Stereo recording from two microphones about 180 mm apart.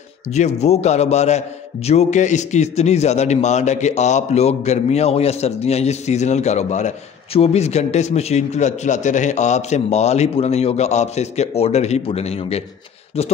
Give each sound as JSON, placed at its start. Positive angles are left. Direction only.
{"t": 0.3, "sound": "a man's voice", "side_deg": 40}